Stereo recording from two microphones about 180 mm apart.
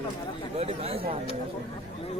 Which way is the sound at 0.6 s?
35° right (ahead or behind).